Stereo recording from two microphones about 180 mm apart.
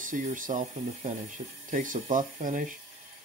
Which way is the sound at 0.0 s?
45° right (ahead or behind).